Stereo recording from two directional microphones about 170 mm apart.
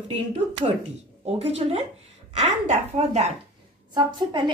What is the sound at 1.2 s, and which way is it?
A woman's voice, 35° right (ahead or behind).